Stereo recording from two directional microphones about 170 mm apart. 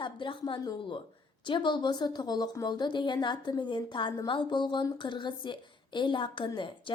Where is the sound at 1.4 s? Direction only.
30° left (ahead or behind).